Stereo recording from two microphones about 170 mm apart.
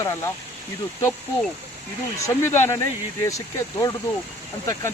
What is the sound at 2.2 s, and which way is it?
Speech, 15° left (ahead or behind).